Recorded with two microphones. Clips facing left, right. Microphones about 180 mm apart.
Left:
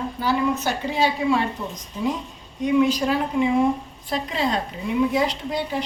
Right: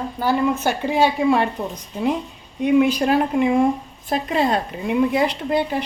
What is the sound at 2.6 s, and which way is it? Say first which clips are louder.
A woman's voice: right 3 dB; 60° right (ahead or behind).